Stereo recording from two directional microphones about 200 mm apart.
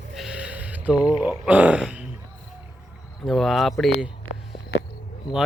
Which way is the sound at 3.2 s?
Centre (ahead or behind).